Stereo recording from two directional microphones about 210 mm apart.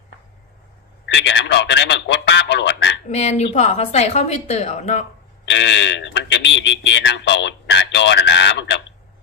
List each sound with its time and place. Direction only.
1.0 s a sound: 60° left (ahead or behind)
3.1 s a woman's voice: 30° left (ahead or behind)
5.5 s speech: 55° left (ahead or behind)